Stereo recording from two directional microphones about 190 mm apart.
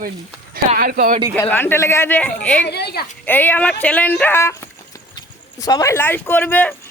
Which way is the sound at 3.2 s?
10° left (ahead or behind).